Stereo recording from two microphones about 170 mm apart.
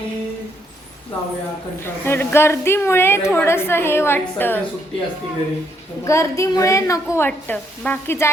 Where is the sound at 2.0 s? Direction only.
15° left (ahead or behind).